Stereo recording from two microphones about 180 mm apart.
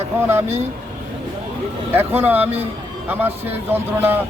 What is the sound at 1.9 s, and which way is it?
Speech, 10° right (ahead or behind).